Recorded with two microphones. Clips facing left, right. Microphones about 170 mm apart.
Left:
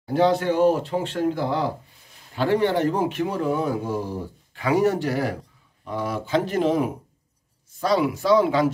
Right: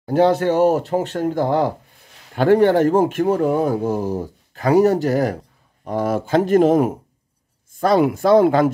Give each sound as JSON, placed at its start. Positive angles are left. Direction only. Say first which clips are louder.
{"t": 0.0, "sound": "a man's voice", "louder": "right 4 dB", "side_deg": -45}